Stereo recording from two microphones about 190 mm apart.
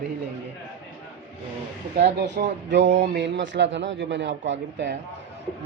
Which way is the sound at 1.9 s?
60° right (ahead or behind).